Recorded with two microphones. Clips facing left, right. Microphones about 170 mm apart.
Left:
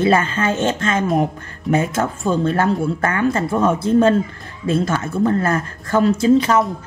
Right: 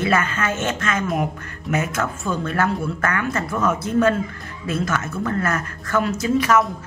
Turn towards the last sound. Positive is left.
turn(degrees=25)  # may be behind; listen again after turning